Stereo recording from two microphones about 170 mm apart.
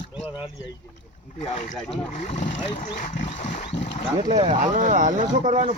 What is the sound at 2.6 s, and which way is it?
Speech, 35° left (ahead or behind).